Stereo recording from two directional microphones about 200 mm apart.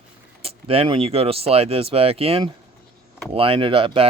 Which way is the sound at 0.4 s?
30° right (ahead or behind).